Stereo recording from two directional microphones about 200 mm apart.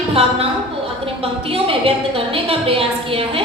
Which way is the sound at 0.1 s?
30° right (ahead or behind).